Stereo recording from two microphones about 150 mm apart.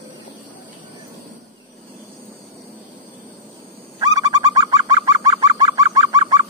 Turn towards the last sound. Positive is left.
turn(degrees=-25)  # may be behind; listen again after turning